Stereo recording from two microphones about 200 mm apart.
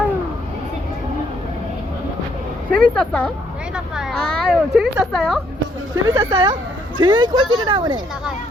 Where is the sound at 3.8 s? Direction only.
Centre (ahead or behind).